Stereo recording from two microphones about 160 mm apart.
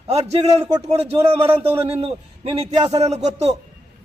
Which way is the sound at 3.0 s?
40° right (ahead or behind).